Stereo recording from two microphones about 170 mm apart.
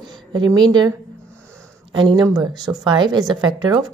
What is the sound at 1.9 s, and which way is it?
A woman's voice, 25° right (ahead or behind).